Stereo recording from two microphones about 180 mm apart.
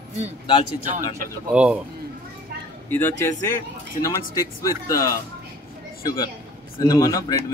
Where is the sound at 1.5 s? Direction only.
5° right (ahead or behind).